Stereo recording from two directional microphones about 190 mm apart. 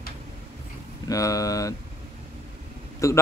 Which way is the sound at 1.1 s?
15° left (ahead or behind).